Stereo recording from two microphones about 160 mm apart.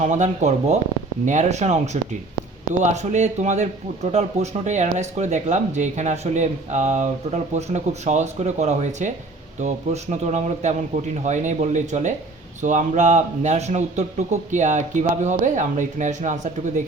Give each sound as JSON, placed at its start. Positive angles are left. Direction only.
{"t": 0.0, "sound": "a man's voice", "side_deg": -50}